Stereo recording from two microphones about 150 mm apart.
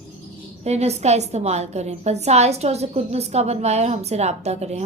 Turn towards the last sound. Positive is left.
turn(degrees=-45)  # may be behind; listen again after turning